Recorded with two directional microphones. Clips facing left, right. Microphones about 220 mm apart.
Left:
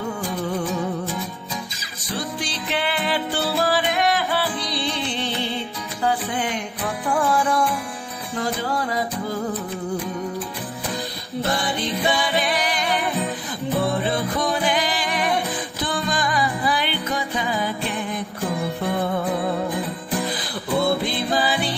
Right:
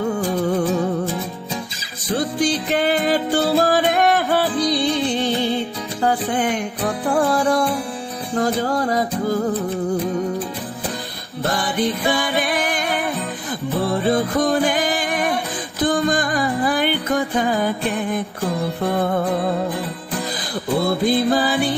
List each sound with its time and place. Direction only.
2.1 s music: 50° right (ahead or behind)
12.4 s music: 50° right (ahead or behind)
14.0 s music: 45° right (ahead or behind)
21.0 s music: 50° right (ahead or behind)